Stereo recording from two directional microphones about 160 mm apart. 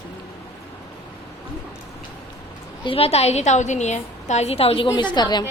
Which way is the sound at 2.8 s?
35° left (ahead or behind).